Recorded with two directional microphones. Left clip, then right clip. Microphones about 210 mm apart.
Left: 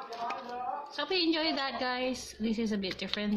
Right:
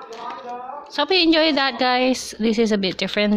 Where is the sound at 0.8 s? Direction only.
55° right (ahead or behind).